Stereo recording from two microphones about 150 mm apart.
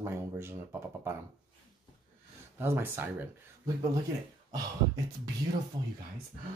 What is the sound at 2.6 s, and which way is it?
Speech, 15° right (ahead or behind).